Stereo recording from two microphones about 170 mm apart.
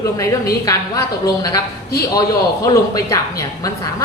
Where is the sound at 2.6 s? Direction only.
20° left (ahead or behind).